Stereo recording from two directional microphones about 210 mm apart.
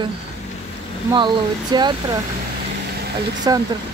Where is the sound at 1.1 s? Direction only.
20° right (ahead or behind).